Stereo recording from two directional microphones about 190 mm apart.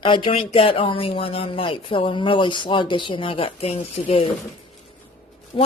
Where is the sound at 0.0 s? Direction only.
25° left (ahead or behind).